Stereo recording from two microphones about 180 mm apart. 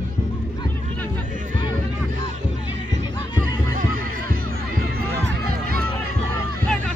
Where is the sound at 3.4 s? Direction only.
50° right (ahead or behind).